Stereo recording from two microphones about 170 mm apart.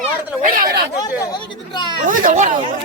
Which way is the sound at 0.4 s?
55° right (ahead or behind).